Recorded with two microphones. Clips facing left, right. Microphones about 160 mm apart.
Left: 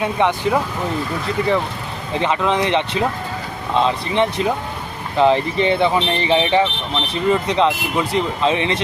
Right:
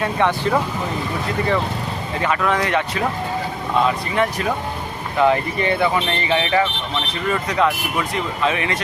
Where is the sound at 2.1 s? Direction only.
20° left (ahead or behind).